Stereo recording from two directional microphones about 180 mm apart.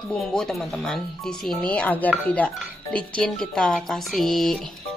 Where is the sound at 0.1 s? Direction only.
5° left (ahead or behind).